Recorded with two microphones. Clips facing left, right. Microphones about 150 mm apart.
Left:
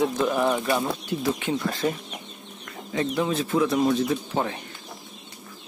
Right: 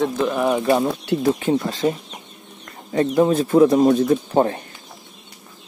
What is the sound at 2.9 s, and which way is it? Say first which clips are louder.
Speech: right 8 dB; 40° right (ahead or behind).